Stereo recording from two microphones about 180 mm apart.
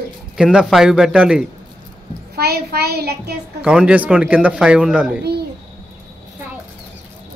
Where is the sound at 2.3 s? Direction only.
60° right (ahead or behind).